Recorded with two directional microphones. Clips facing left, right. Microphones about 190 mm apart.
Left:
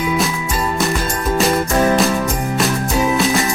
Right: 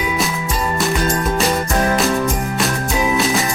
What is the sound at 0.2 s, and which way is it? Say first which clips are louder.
Music: left 1 dB; centre (ahead or behind).